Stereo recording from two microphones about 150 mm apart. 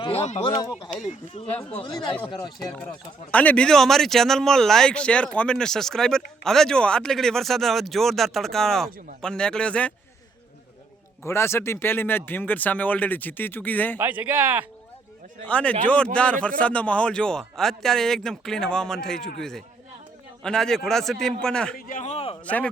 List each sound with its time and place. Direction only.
0.0 s speech: 45° left (ahead or behind)
0.7 s a man's voice: 5° right (ahead or behind)
1.7 s speech: 30° left (ahead or behind)
3.3 s a man's voice: 10° left (ahead or behind)
11.2 s a man's voice: 15° left (ahead or behind)
14.0 s speech: 10° right (ahead or behind)
15.4 s a man's voice: 10° left (ahead or behind)
21.8 s a man's voice: 65° left (ahead or behind)
22.1 s a sound: 40° left (ahead or behind)
22.4 s a man's voice: 10° left (ahead or behind)